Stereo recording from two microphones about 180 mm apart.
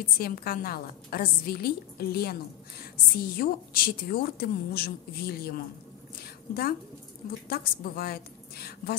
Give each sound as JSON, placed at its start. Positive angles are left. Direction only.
{"t": 0.0, "sound": "a woman's voice", "side_deg": 55}
{"t": 6.2, "sound": "a sound", "side_deg": 60}
{"t": 7.4, "sound": "a woman's voice", "side_deg": 55}